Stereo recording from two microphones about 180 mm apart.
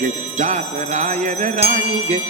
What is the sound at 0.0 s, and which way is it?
Music, 40° right (ahead or behind).